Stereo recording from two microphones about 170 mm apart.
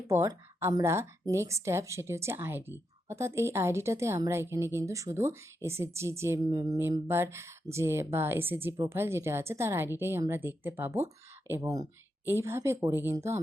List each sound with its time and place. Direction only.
0.1 s speech: 15° right (ahead or behind)